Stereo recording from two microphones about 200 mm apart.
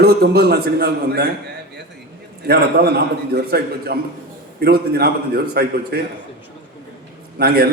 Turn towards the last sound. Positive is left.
turn(degrees=-50)  # may be behind; listen again after turning